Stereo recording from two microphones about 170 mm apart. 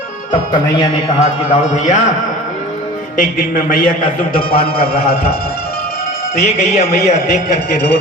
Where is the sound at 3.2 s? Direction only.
55° left (ahead or behind).